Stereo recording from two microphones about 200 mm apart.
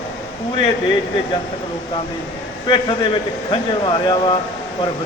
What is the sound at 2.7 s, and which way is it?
A man's voice, 25° left (ahead or behind).